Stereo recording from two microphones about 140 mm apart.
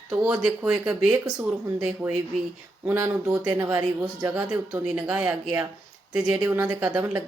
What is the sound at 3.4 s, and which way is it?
Speech, 15° right (ahead or behind).